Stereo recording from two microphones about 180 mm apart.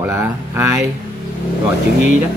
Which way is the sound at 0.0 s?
15° right (ahead or behind).